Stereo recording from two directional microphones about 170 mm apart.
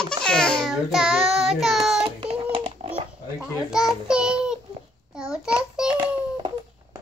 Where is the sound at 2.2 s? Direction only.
30° right (ahead or behind).